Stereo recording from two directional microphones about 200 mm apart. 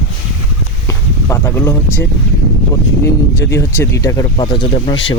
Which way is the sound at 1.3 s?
15° left (ahead or behind).